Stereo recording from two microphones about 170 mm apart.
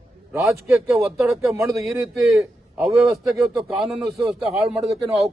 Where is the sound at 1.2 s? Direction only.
Centre (ahead or behind).